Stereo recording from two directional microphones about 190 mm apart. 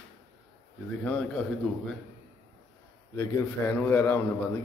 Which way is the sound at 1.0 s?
5° left (ahead or behind).